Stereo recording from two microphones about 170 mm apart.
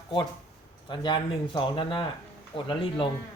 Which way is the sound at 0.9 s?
30° left (ahead or behind).